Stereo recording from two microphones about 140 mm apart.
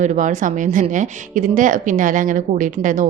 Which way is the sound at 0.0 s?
60° right (ahead or behind).